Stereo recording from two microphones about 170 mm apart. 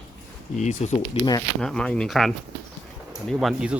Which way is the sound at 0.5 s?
40° left (ahead or behind).